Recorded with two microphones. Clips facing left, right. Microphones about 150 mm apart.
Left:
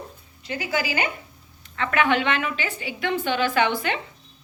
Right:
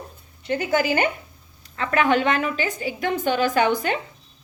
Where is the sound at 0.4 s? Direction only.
50° right (ahead or behind).